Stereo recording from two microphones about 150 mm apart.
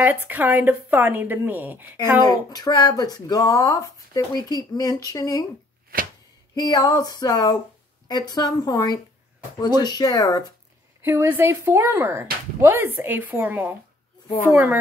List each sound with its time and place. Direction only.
0.0 s a woman's voice: 10° right (ahead or behind)
2.2 s speech: 25° left (ahead or behind)
6.5 s speech: 30° left (ahead or behind)
11.1 s a woman's voice: 15° right (ahead or behind)